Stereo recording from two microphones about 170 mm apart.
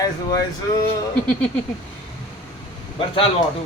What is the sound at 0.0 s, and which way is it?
Speech, 20° left (ahead or behind).